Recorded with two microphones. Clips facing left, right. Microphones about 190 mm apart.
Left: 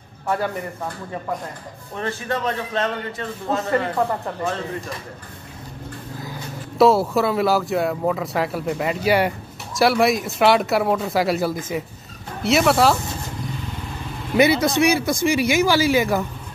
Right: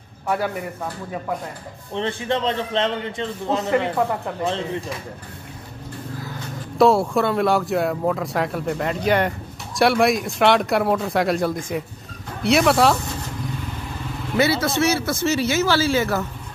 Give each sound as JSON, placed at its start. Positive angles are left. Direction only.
{"t": 2.0, "sound": "a man's voice", "side_deg": -25}
{"t": 6.8, "sound": "speech", "side_deg": 0}
{"t": 14.3, "sound": "speech", "side_deg": 15}